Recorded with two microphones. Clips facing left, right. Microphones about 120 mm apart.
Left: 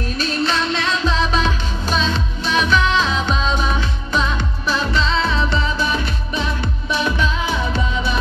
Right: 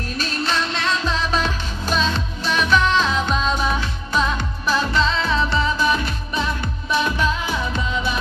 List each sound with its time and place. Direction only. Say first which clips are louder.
0.2 s music: left 3 dB; 45° right (ahead or behind)